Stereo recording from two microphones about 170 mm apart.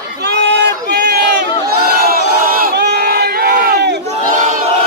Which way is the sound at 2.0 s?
60° right (ahead or behind).